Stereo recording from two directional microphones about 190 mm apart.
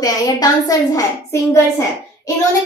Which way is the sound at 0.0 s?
20° left (ahead or behind).